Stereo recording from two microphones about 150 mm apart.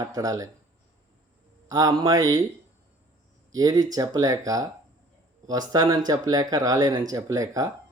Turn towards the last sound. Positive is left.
turn(degrees=-20)  # may be behind; listen again after turning